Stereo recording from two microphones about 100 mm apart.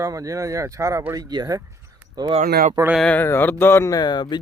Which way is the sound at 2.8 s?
40° right (ahead or behind).